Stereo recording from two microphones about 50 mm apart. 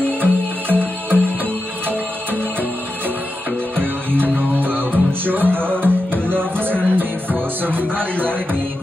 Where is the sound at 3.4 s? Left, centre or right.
Right.